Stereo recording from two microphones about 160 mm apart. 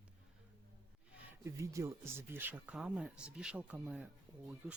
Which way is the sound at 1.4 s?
20° right (ahead or behind).